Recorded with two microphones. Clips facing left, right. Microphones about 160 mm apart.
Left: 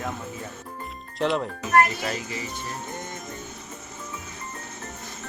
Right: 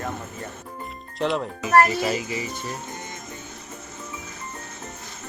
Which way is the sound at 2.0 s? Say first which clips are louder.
Right 5 dB; 10° right (ahead or behind).